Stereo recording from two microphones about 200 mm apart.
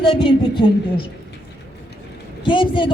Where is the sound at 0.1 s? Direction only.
25° left (ahead or behind).